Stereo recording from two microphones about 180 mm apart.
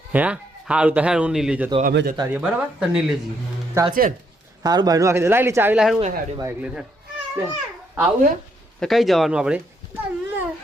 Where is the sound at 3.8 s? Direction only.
15° right (ahead or behind).